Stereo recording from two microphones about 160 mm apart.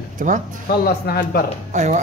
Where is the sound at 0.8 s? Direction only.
75° left (ahead or behind).